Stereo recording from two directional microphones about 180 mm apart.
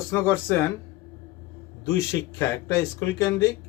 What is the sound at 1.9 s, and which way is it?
Speech, 15° left (ahead or behind).